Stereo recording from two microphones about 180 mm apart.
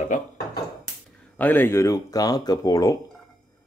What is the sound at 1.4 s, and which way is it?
Speech, 10° left (ahead or behind).